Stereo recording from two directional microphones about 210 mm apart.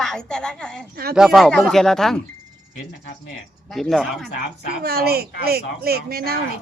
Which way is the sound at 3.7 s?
Centre (ahead or behind).